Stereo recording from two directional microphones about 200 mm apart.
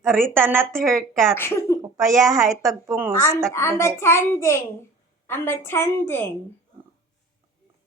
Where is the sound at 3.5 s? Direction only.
15° left (ahead or behind).